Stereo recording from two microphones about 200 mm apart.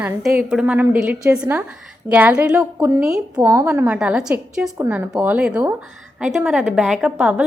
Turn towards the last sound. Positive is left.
turn(degrees=-10)  # may be behind; listen again after turning